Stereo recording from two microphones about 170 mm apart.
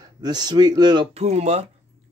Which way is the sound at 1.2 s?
40° right (ahead or behind).